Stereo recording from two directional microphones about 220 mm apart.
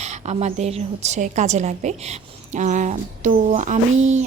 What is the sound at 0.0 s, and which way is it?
A woman's voice, 30° right (ahead or behind).